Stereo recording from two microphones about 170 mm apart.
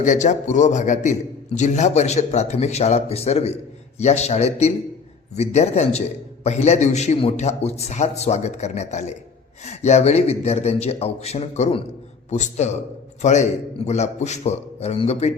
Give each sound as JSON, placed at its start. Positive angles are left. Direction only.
{"t": 0.0, "sound": "a man's voice", "side_deg": 45}